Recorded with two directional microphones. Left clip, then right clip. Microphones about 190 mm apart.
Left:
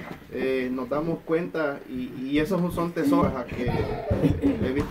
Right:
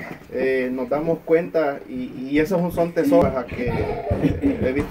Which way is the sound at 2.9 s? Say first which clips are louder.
Right 6 dB; 10° left (ahead or behind).